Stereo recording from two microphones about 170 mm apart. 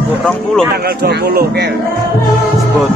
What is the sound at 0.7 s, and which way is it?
Speech, 70° right (ahead or behind).